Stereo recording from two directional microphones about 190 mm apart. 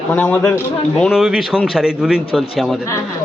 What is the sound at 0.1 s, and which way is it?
A man's voice, 10° left (ahead or behind).